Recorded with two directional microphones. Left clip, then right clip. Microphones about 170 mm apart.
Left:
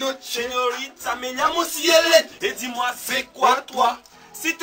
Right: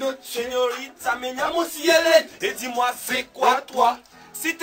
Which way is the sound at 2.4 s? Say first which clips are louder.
Right 1 dB; 10° right (ahead or behind).